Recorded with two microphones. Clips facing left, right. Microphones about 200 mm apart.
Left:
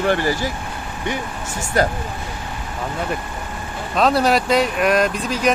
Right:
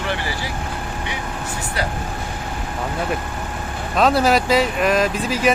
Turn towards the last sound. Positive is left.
turn(degrees=-5)  # may be behind; listen again after turning